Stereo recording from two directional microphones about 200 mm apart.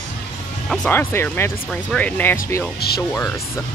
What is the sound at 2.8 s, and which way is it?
Speech, 50° left (ahead or behind).